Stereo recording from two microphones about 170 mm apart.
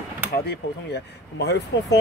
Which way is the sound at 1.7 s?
90° left.